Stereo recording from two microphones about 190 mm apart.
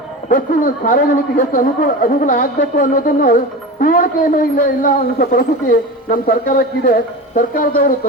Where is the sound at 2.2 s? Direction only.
45° left (ahead or behind).